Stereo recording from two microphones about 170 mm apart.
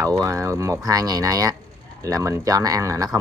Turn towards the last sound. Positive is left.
turn(degrees=-20)  # may be behind; listen again after turning